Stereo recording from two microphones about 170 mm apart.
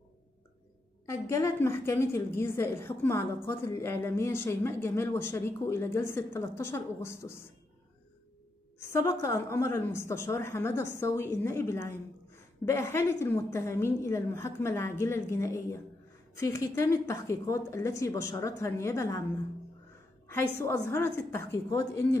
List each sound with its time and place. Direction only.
1.0 s a woman's voice: 15° left (ahead or behind)
9.0 s a woman's voice: 20° left (ahead or behind)
20.5 s a woman's voice: 15° left (ahead or behind)